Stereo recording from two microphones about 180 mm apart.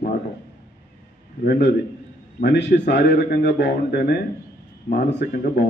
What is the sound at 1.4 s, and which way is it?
Speech, 60° left (ahead or behind).